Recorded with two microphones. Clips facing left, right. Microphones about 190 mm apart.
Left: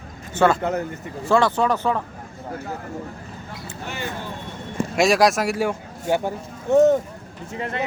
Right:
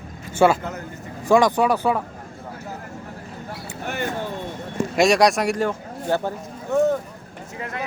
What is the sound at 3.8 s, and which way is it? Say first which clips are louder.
Speech: right 4 dB; 55° right (ahead or behind).